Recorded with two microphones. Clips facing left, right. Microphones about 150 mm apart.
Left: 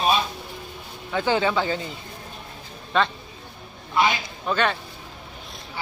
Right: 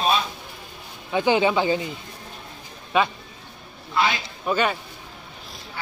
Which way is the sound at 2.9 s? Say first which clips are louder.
Right 1 dB; 10° right (ahead or behind).